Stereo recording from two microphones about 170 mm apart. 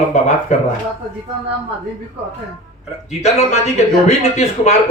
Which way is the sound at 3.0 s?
40° left (ahead or behind).